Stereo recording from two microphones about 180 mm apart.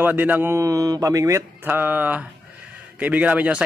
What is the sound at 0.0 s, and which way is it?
A man's voice, 10° right (ahead or behind).